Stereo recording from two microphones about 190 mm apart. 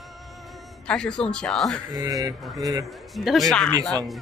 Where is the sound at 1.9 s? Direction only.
20° right (ahead or behind).